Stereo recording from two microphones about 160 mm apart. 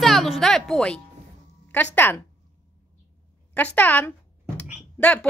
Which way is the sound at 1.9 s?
15° left (ahead or behind).